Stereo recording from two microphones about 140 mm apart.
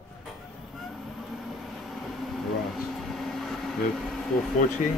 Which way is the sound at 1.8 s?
Centre (ahead or behind).